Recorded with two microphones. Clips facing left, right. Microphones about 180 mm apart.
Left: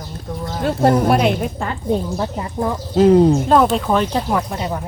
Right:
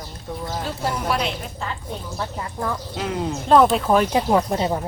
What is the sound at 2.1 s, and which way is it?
Speech, 25° left (ahead or behind).